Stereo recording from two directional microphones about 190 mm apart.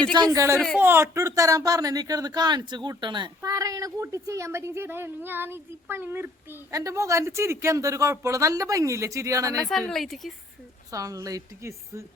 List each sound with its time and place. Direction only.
0.1 s speech: 20° right (ahead or behind)
9.6 s a woman's voice: centre (ahead or behind)
10.9 s speech: 15° right (ahead or behind)